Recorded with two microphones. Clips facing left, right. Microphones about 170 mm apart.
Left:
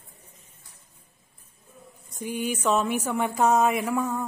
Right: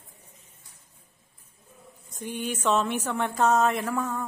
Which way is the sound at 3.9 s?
20° left (ahead or behind).